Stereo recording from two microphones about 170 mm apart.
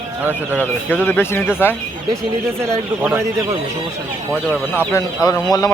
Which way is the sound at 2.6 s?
15° right (ahead or behind).